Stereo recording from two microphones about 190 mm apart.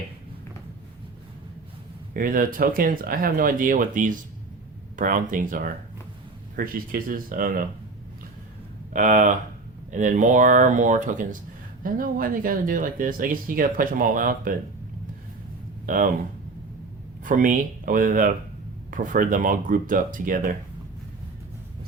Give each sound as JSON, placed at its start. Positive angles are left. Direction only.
{"t": 2.1, "sound": "speech", "side_deg": -45}
{"t": 8.9, "sound": "speech", "side_deg": -40}
{"t": 17.2, "sound": "speech", "side_deg": -45}